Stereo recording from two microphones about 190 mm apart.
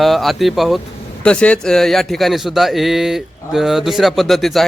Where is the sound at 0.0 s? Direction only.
Centre (ahead or behind).